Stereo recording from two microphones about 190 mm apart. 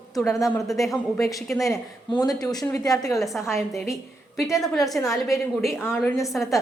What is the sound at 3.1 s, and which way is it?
A woman's voice, centre (ahead or behind).